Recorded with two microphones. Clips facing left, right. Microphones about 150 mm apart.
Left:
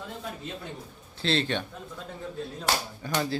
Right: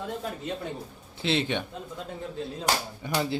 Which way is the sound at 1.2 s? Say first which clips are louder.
Even; 15° right (ahead or behind).